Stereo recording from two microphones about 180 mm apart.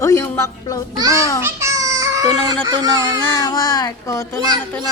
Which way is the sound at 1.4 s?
15° right (ahead or behind).